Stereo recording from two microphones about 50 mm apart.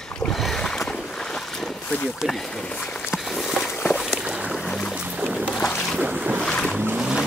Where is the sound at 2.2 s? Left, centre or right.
Centre.